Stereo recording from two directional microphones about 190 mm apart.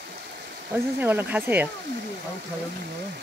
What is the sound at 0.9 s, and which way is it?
Speech, 10° right (ahead or behind).